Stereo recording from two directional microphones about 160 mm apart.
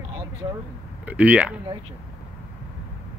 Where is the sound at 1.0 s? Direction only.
10° right (ahead or behind).